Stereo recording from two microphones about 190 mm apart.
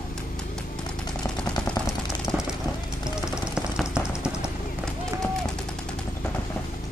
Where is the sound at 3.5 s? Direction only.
5° right (ahead or behind).